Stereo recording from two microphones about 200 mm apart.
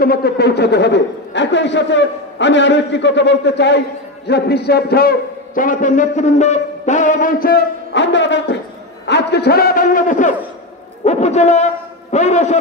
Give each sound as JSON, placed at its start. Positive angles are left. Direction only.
{"t": 0.0, "sound": "a man's voice", "side_deg": 50}